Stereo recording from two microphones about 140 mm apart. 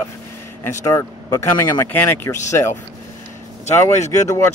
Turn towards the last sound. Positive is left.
turn(degrees=20)  # may be behind; listen again after turning